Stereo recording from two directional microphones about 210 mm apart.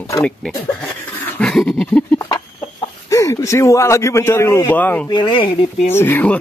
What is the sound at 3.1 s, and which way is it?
Speech, 15° left (ahead or behind).